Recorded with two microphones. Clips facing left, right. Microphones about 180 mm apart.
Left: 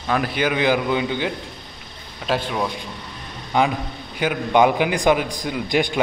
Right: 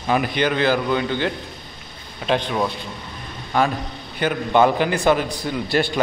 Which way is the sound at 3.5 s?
15° left (ahead or behind).